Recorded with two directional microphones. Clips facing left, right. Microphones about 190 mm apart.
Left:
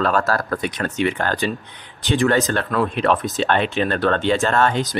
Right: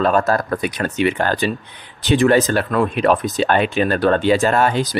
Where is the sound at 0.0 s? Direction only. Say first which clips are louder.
Right 3 dB; 20° right (ahead or behind).